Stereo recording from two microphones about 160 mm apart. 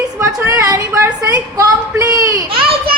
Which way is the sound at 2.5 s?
35° right (ahead or behind).